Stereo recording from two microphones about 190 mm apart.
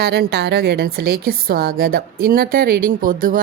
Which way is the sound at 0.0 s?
60° right (ahead or behind).